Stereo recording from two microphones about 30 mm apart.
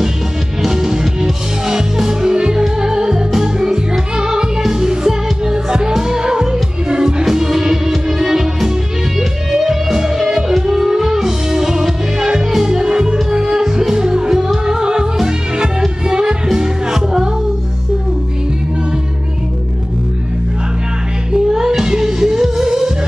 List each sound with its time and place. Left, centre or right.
0.7 s music: centre
21.5 s music: centre